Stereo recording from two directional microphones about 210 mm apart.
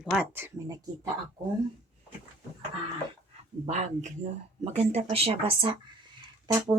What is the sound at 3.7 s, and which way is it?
Speech, 35° right (ahead or behind).